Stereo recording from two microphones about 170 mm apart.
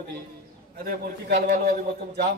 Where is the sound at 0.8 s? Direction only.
65° right (ahead or behind).